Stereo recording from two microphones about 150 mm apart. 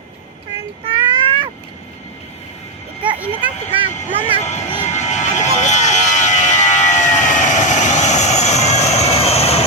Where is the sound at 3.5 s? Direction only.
50° left (ahead or behind).